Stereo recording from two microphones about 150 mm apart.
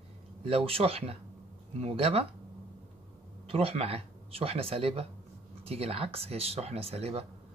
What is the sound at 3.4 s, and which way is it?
A man's voice, 40° right (ahead or behind).